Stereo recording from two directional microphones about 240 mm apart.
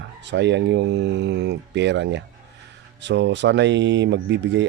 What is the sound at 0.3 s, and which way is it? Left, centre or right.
Speech, right.